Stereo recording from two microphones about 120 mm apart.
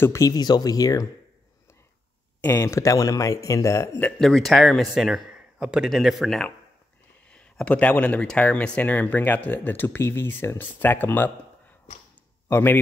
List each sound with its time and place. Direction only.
0.0 s speech: 25° left (ahead or behind)
2.4 s speech: 20° left (ahead or behind)
4.2 s speech: centre (ahead or behind)
12.4 s speech: 20° left (ahead or behind)